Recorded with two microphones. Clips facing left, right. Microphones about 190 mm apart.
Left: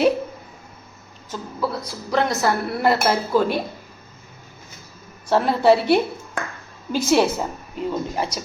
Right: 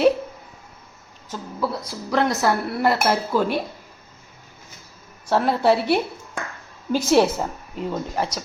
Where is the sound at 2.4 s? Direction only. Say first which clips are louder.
Left 1 dB; 5° right (ahead or behind).